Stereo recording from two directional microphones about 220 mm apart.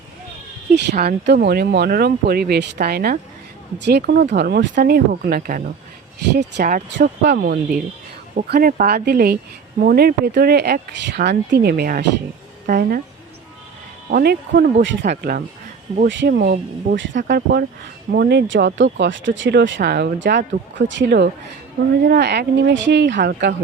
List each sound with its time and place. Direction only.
0.7 s a woman's voice: 50° right (ahead or behind)
14.1 s speech: 45° right (ahead or behind)
16.0 s speech: 55° right (ahead or behind)